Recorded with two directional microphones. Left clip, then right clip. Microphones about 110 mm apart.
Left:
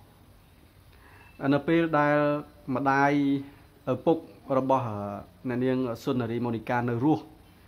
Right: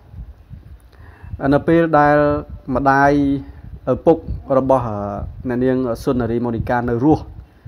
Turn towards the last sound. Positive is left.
turn(degrees=-35)  # may be behind; listen again after turning